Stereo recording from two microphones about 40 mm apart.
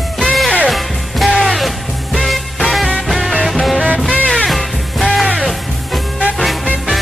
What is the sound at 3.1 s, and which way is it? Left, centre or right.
Music, centre.